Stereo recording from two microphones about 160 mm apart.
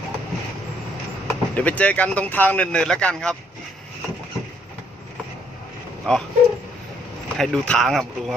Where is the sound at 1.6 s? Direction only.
10° left (ahead or behind).